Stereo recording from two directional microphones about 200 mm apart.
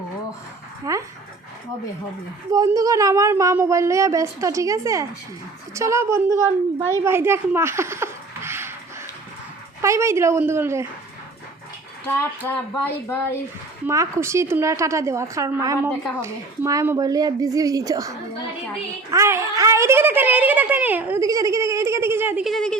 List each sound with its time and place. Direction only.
0.9 s speech: 15° right (ahead or behind)
2.5 s a woman's voice: 15° right (ahead or behind)
9.8 s speech: 15° right (ahead or behind)
12.0 s speech: 10° left (ahead or behind)
13.8 s speech: 15° right (ahead or behind)
19.1 s speech: 15° right (ahead or behind)
22.4 s a woman's voice: centre (ahead or behind)